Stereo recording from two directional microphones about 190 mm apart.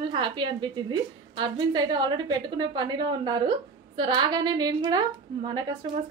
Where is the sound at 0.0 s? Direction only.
25° right (ahead or behind).